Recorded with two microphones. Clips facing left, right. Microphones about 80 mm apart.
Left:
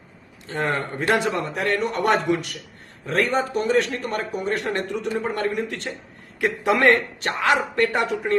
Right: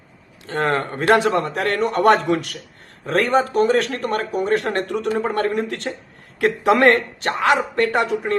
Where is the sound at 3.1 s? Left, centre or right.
Right.